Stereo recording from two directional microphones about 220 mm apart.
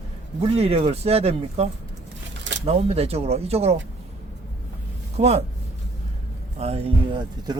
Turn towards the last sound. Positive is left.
turn(degrees=-20)  # may be behind; listen again after turning